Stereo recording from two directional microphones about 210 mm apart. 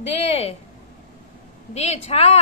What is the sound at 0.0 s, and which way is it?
Speech, 30° left (ahead or behind).